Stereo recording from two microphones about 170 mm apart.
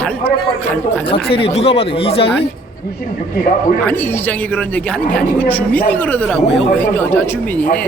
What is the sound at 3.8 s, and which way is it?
Speech, 10° left (ahead or behind).